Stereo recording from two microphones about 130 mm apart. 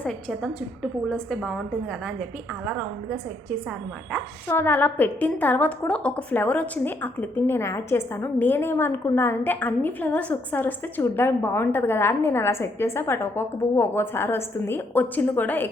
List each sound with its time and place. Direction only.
0.0 s a woman's voice: 5° left (ahead or behind)
4.4 s a woman's voice: 15° left (ahead or behind)